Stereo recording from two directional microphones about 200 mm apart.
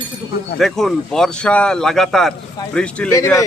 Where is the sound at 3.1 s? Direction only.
15° left (ahead or behind).